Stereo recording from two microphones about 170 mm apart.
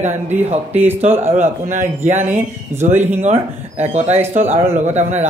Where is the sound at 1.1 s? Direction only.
15° right (ahead or behind).